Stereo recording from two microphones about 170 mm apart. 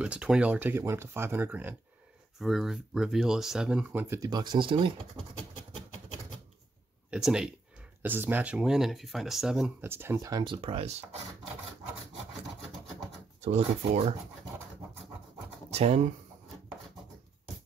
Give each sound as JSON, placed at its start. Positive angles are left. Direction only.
{"t": 0.0, "sound": "speech", "side_deg": -5}
{"t": 2.4, "sound": "speech", "side_deg": 0}
{"t": 7.1, "sound": "speech", "side_deg": -5}
{"t": 9.8, "sound": "speech", "side_deg": -15}
{"t": 13.4, "sound": "speech", "side_deg": -40}
{"t": 15.7, "sound": "speech", "side_deg": -40}